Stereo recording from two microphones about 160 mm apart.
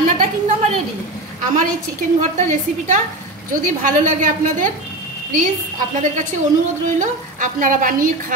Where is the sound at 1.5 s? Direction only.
50° right (ahead or behind).